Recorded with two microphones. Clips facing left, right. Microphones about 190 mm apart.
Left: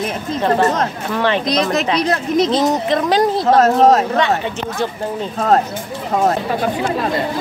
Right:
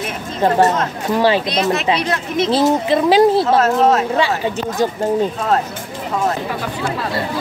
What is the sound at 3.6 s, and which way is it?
Speech, 40° left (ahead or behind).